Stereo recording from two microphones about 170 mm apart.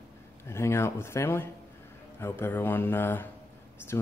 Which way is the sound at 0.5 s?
15° left (ahead or behind).